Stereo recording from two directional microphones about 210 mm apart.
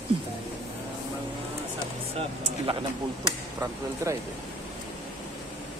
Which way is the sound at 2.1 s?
25° right (ahead or behind).